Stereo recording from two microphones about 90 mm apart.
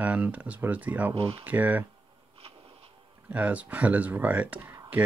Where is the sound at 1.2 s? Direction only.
90° right.